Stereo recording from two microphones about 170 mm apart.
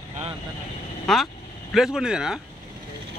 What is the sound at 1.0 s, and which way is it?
Speech, centre (ahead or behind).